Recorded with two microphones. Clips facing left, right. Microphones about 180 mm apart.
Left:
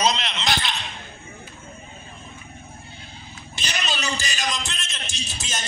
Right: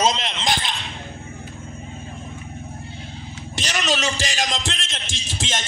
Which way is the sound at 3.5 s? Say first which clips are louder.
Right 6 dB; 90° right.